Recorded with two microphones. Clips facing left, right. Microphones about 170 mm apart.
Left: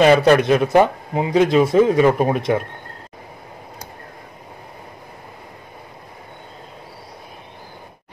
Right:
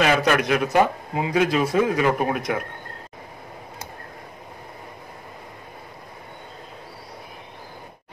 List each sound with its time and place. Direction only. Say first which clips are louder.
0.0 s speech: left 7 dB; 30° left (ahead or behind)